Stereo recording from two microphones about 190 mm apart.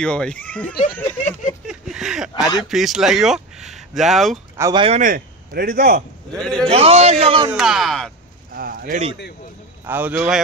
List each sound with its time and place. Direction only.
0.0 s speech: 5° left (ahead or behind)
1.7 s a sound: 5° right (ahead or behind)
2.7 s speech: centre (ahead or behind)
4.6 s a man's voice: 20° right (ahead or behind)
4.8 s a man's voice: 40° right (ahead or behind)
6.3 s speech: 5° left (ahead or behind)
6.7 s a man's voice: 30° right (ahead or behind)
7.5 s speech: centre (ahead or behind)
8.5 s a sound: 50° right (ahead or behind)
9.8 s a man's voice: 10° right (ahead or behind)